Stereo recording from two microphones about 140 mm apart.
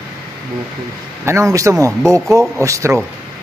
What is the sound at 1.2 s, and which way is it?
Speech, 20° right (ahead or behind).